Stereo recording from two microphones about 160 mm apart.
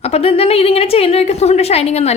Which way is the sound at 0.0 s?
40° left (ahead or behind).